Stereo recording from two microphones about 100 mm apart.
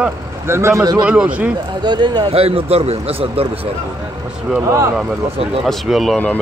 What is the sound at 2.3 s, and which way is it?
A man's voice, 75° right (ahead or behind).